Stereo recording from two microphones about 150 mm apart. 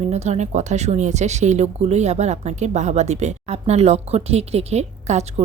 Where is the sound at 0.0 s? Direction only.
45° right (ahead or behind).